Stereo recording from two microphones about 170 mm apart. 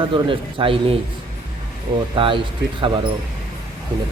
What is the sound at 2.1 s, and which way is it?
Speech, 30° right (ahead or behind).